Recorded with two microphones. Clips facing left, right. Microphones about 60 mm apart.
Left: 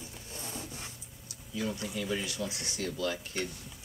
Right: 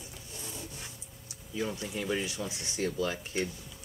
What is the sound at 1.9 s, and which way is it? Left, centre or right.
Speech, right.